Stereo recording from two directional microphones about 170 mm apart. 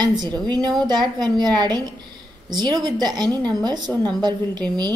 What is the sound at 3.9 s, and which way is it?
Speech, 10° left (ahead or behind).